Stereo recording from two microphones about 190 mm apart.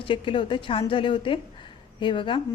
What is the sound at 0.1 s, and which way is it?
A woman's voice, 25° left (ahead or behind).